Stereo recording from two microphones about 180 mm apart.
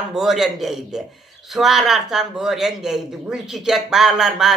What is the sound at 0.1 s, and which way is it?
A man's voice, centre (ahead or behind).